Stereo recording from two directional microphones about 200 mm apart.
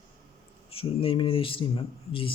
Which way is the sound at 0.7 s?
30° left (ahead or behind).